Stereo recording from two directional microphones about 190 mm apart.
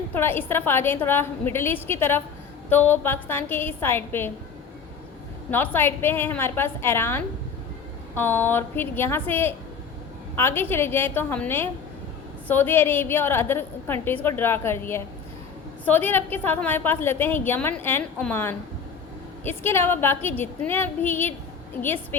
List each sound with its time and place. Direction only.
0.1 s a woman's voice: 10° left (ahead or behind)
5.5 s a woman's voice: 10° left (ahead or behind)